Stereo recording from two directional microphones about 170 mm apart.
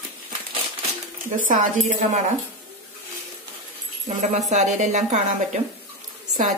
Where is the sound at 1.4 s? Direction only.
50° right (ahead or behind).